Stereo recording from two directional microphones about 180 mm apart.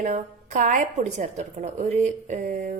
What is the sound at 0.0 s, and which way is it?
A woman's voice, 45° right (ahead or behind).